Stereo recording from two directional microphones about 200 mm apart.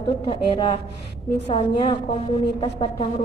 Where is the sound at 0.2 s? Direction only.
25° left (ahead or behind).